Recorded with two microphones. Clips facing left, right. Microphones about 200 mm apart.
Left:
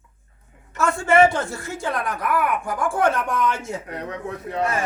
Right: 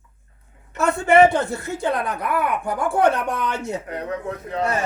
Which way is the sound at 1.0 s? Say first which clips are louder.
Right 2 dB; 20° right (ahead or behind).